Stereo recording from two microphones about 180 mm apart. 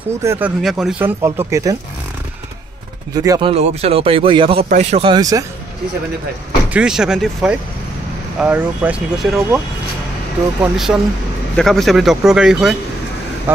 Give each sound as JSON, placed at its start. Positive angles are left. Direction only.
{"t": 0.2, "sound": "speech", "side_deg": -15}
{"t": 0.6, "sound": "speech", "side_deg": 0}
{"t": 3.2, "sound": "speech", "side_deg": -25}
{"t": 4.6, "sound": "speech", "side_deg": -40}
{"t": 5.0, "sound": "speech", "side_deg": -20}
{"t": 6.7, "sound": "speech", "side_deg": -5}
{"t": 10.6, "sound": "speech", "side_deg": -5}